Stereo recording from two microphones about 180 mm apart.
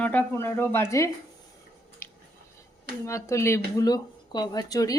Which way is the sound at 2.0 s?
15° left (ahead or behind).